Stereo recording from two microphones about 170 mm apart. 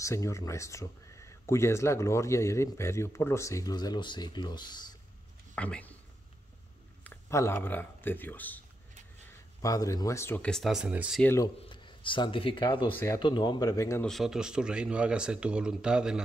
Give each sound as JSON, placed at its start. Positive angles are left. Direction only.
{"t": 0.0, "sound": "speech", "side_deg": 15}
{"t": 5.6, "sound": "speech", "side_deg": 10}
{"t": 7.1, "sound": "speech", "side_deg": 15}
{"t": 11.2, "sound": "speech", "side_deg": 20}
{"t": 12.9, "sound": "speech", "side_deg": 20}
{"t": 14.0, "sound": "speech", "side_deg": 0}